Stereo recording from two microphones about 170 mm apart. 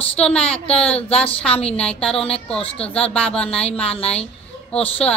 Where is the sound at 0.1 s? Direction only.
5° left (ahead or behind).